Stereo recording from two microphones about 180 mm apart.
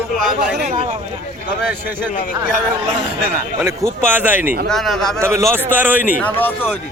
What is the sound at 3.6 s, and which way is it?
Speech, 15° right (ahead or behind).